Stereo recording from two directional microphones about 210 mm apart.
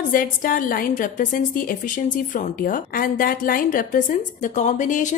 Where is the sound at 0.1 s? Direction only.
40° left (ahead or behind).